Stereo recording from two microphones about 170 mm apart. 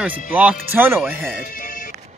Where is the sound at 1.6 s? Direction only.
55° left (ahead or behind).